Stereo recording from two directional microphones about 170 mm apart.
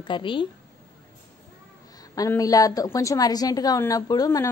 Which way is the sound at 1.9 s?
20° left (ahead or behind).